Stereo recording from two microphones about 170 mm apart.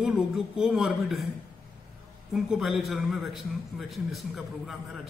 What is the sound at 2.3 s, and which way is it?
A man's voice, centre (ahead or behind).